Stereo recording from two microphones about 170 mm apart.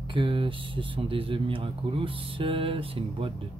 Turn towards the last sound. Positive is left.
turn(degrees=-30)  # may be behind; listen again after turning